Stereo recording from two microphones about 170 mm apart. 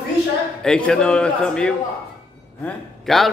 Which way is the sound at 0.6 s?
5° left (ahead or behind).